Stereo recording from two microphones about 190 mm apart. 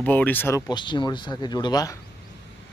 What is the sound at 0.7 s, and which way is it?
Speech, 25° left (ahead or behind).